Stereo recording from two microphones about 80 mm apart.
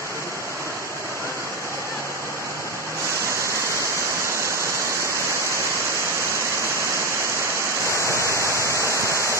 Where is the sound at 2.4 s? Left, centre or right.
Left.